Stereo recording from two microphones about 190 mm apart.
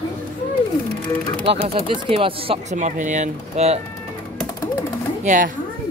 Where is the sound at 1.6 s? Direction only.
30° right (ahead or behind).